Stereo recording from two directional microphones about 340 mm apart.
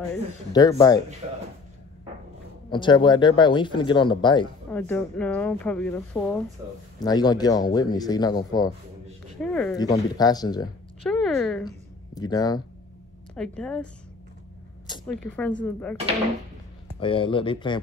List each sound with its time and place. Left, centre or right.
0.5 s speech: centre
1.2 s a sound: centre
2.7 s speech: centre
11.0 s speech: centre
15.0 s speech: centre
17.0 s speech: centre